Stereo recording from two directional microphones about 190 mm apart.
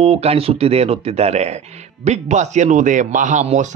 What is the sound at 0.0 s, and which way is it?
Speech, 30° right (ahead or behind).